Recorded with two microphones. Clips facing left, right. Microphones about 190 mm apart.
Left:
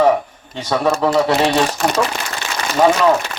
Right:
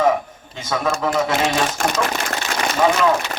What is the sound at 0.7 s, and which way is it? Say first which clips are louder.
Speech: left 5 dB; 35° left (ahead or behind).